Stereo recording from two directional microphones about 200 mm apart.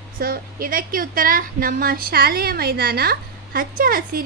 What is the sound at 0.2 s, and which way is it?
A woman's voice, 45° right (ahead or behind).